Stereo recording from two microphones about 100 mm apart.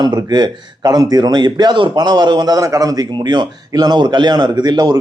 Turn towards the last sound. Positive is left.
turn(degrees=-40)  # may be behind; listen again after turning